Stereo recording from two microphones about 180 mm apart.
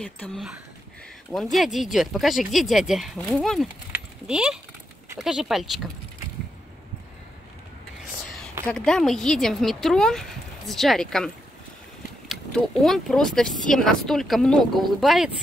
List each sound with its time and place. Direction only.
0.0 s speech: 10° left (ahead or behind)
3.9 s typing: 5° right (ahead or behind)
5.2 s speech: centre (ahead or behind)
8.6 s speech: 5° left (ahead or behind)